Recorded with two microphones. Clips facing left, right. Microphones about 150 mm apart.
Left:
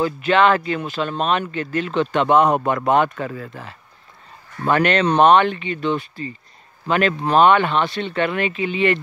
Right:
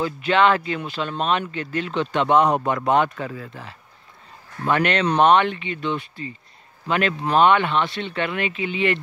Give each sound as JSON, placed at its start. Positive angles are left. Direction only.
{"t": 0.0, "sound": "speech", "side_deg": 50}